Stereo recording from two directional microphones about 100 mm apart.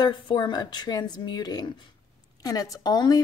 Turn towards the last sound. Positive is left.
turn(degrees=40)  # may be behind; listen again after turning